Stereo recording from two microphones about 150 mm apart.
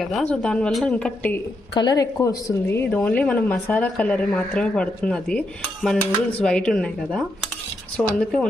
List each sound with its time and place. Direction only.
0.0 s a woman's voice: 5° left (ahead or behind)
1.7 s a woman's voice: 25° left (ahead or behind)
2.7 s a woman's voice: 15° left (ahead or behind)